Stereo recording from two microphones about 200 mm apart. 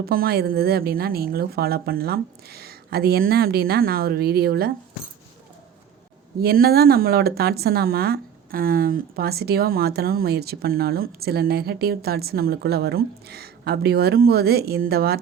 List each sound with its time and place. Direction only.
0.0 s speech: 50° right (ahead or behind)
6.4 s speech: 50° right (ahead or behind)